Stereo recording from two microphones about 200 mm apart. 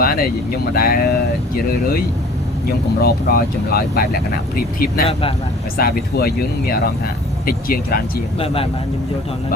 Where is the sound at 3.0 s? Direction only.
50° left (ahead or behind).